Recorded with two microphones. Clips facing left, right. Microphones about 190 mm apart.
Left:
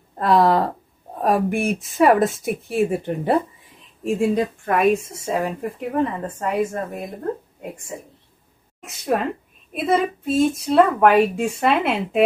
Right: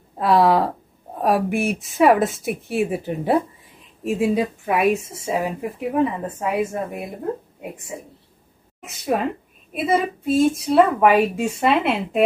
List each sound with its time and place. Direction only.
0.1 s speech: centre (ahead or behind)